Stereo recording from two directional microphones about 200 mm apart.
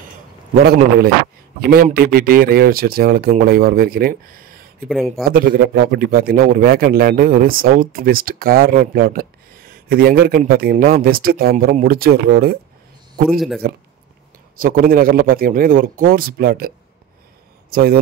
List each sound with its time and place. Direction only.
0.7 s a man's voice: 50° right (ahead or behind)
4.8 s speech: centre (ahead or behind)
5.2 s a man's voice: 45° right (ahead or behind)
13.3 s speech: centre (ahead or behind)
14.6 s a man's voice: 45° right (ahead or behind)